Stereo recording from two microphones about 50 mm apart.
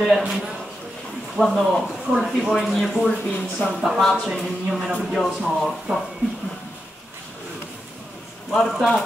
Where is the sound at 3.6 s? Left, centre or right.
Left.